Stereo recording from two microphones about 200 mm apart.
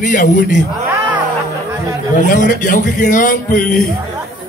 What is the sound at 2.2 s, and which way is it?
Speech, 40° left (ahead or behind).